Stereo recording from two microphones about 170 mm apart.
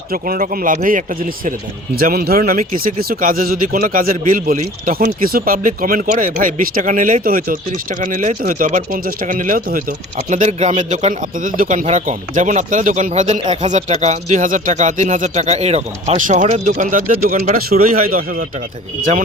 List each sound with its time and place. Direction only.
0.1 s speech: 55° right (ahead or behind)
10.2 s speech: 45° right (ahead or behind); by 18.4 s 60° right (ahead or behind)